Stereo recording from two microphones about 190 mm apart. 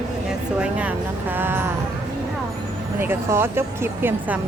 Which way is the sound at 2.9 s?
10° right (ahead or behind).